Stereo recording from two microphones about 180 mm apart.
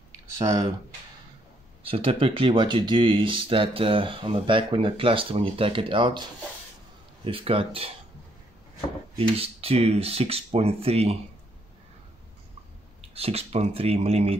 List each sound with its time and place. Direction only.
1.8 s speech: 30° right (ahead or behind)
7.2 s speech: 30° right (ahead or behind)
9.4 s speech: 35° right (ahead or behind)
13.1 s speech: 35° right (ahead or behind)